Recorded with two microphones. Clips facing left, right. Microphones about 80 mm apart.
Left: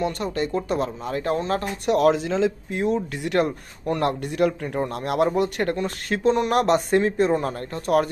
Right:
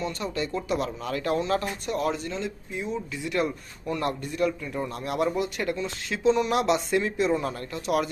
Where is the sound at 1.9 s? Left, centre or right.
Left.